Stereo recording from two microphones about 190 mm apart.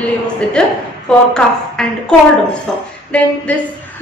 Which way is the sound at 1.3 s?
5° left (ahead or behind).